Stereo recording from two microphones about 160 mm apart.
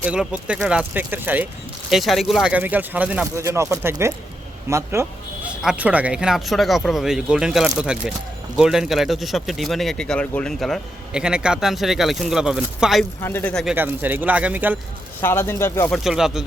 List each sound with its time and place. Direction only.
0.0 s speech: 5° right (ahead or behind)
1.9 s speech: centre (ahead or behind)
13.2 s speech: 15° left (ahead or behind)
13.7 s speech: 10° right (ahead or behind)
15.2 s speech: 15° left (ahead or behind)
15.9 s speech: centre (ahead or behind)